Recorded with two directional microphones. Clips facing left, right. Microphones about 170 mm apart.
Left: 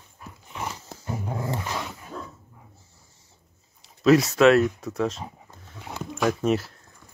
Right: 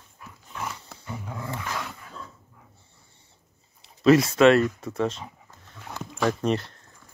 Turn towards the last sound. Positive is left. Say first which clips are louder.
# left 1 dB
turn(degrees=5)  # may be behind; listen again after turning